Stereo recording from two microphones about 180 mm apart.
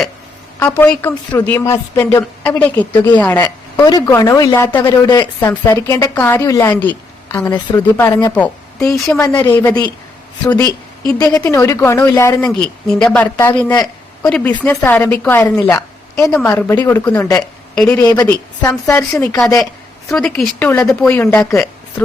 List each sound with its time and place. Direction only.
0.6 s a woman's voice: 10° left (ahead or behind)
11.3 s a woman's voice: 15° left (ahead or behind)
13.3 s speech: 25° left (ahead or behind)
14.2 s a woman's voice: 5° left (ahead or behind)
17.4 s a woman's voice: 5° left (ahead or behind)
20.1 s a woman's voice: 5° left (ahead or behind)